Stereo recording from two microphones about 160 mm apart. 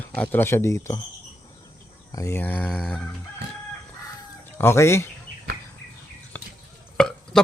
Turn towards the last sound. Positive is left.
turn(degrees=5)  # may be behind; listen again after turning